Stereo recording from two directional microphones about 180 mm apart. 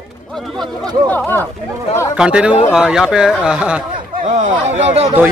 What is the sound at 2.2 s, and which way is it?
Speech, 5° right (ahead or behind).